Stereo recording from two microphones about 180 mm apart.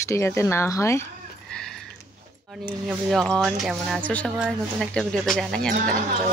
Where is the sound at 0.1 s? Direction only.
15° left (ahead or behind).